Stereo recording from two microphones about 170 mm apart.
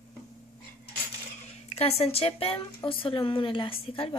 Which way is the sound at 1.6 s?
35° left (ahead or behind).